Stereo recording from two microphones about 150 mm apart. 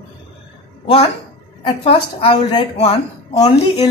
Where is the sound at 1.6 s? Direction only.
35° left (ahead or behind).